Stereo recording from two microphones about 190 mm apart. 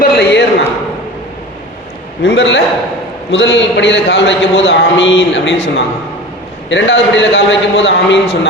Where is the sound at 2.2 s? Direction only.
70° left (ahead or behind).